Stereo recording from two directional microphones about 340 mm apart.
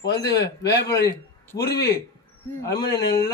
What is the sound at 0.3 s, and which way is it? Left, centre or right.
A man's voice, left.